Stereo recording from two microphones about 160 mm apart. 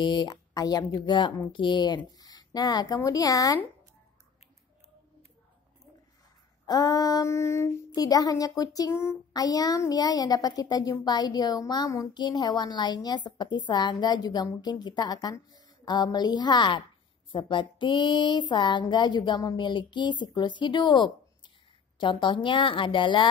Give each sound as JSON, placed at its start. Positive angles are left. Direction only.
{"t": 0.0, "sound": "female singing", "side_deg": 30}
{"t": 2.0, "sound": "speech", "side_deg": 25}
{"t": 6.6, "sound": "female singing", "side_deg": 25}
{"t": 21.9, "sound": "a woman's voice", "side_deg": 30}